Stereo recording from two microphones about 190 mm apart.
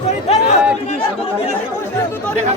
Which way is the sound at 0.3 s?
35° left (ahead or behind).